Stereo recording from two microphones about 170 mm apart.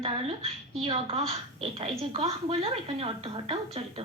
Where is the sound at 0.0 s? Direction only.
35° right (ahead or behind).